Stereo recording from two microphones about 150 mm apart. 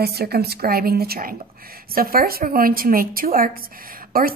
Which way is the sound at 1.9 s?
75° right (ahead or behind).